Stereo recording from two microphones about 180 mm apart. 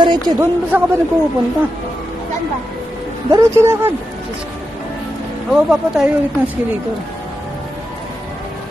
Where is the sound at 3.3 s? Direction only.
15° right (ahead or behind).